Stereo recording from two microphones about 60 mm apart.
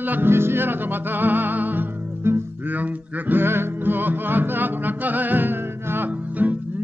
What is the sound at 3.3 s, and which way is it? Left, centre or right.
Music, right.